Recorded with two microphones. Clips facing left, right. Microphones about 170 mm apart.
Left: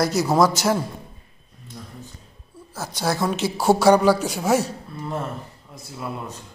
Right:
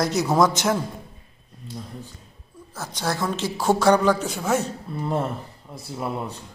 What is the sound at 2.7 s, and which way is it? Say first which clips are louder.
A man's voice: left 3 dB; 10° left (ahead or behind).